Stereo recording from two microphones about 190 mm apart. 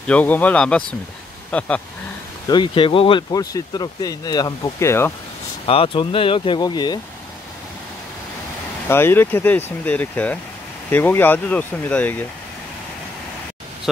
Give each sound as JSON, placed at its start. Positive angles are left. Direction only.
{"t": 0.0, "sound": "speech", "side_deg": 10}
{"t": 2.4, "sound": "speech", "side_deg": 25}
{"t": 5.7, "sound": "speech", "side_deg": 30}
{"t": 8.8, "sound": "speech", "side_deg": 10}